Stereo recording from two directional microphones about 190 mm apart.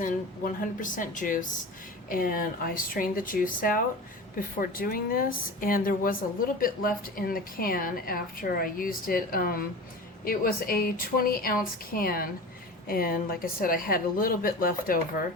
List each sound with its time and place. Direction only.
0.0 s a woman's voice: 45° left (ahead or behind)